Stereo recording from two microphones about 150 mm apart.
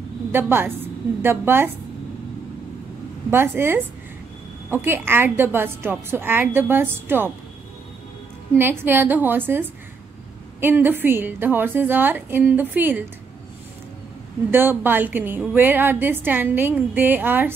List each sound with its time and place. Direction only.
0.3 s a woman's voice: 15° right (ahead or behind)
3.3 s a woman's voice: 15° right (ahead or behind)
8.5 s a woman's voice: 15° right (ahead or behind)
14.5 s a woman's voice: 15° right (ahead or behind)